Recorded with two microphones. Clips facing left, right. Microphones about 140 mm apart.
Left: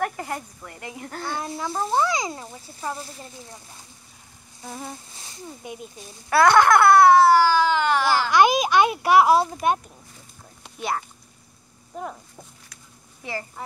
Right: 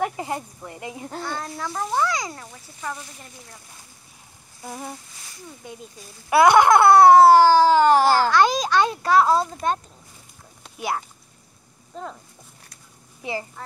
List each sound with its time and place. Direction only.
0.0 s speech: 15° right (ahead or behind)
1.2 s speech: 15° left (ahead or behind)
1.7 s speech: 30° left (ahead or behind)
4.6 s a sound: 5° right (ahead or behind)
5.1 s speech: 25° left (ahead or behind)
6.3 s a sound: 20° right (ahead or behind); by 8.3 s 35° right (ahead or behind)
8.3 s speech: 15° left (ahead or behind)
10.8 s a sound: 5° right (ahead or behind)
11.9 s speech: 10° left (ahead or behind)
13.2 s speech: 20° right (ahead or behind)